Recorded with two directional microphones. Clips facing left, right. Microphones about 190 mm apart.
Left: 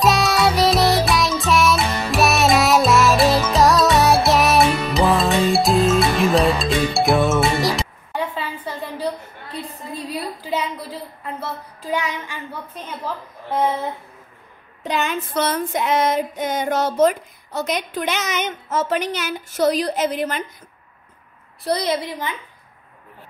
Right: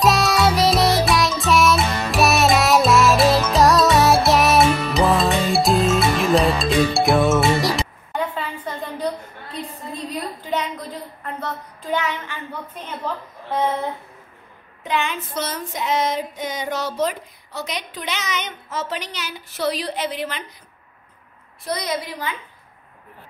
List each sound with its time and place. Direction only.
0.0 s music: centre (ahead or behind)
10.5 s a sound: 5° left (ahead or behind)
13.5 s a sound: 10° left (ahead or behind)
14.8 s speech: 40° left (ahead or behind)
15.3 s child singing: 60° left (ahead or behind)
21.6 s a woman's voice: 30° left (ahead or behind)